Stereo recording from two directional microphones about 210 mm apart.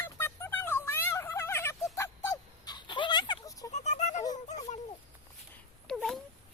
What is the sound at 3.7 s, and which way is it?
Music, 35° left (ahead or behind).